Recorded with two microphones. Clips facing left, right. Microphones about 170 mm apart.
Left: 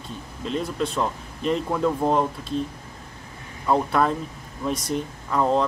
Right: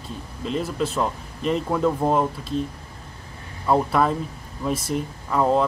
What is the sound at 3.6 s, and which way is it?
Speech, centre (ahead or behind).